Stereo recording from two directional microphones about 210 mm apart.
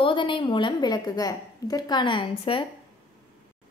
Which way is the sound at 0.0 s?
25° left (ahead or behind).